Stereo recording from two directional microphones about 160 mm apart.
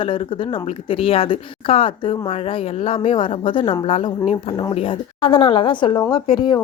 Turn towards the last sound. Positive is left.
turn(degrees=30)  # may be behind; listen again after turning